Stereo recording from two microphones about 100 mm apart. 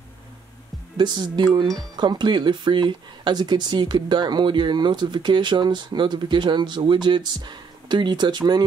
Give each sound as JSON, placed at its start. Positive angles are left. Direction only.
{"t": 0.9, "sound": "speech", "side_deg": -45}